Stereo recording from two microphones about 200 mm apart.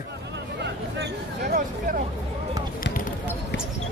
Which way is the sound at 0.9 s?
55° right (ahead or behind).